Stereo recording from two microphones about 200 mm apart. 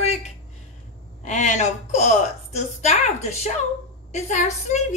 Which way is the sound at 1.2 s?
35° left (ahead or behind).